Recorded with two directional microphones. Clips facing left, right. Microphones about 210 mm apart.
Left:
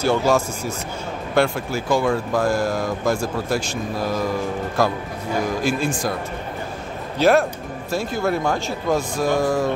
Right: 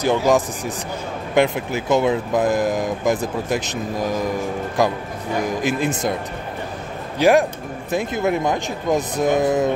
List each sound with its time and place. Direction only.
0.0 s speech: 15° right (ahead or behind)
7.2 s speech: 15° right (ahead or behind)